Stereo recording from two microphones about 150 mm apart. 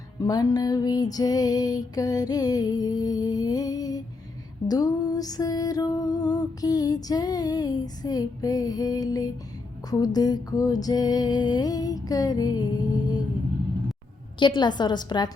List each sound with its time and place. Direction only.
0.2 s music: 25° left (ahead or behind)
14.3 s music: 30° left (ahead or behind)